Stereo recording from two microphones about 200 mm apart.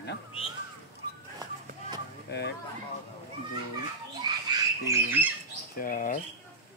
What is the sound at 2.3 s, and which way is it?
Speech, 55° left (ahead or behind).